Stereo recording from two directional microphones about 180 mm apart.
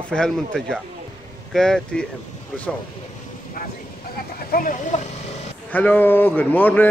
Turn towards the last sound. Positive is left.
turn(degrees=10)  # may be behind; listen again after turning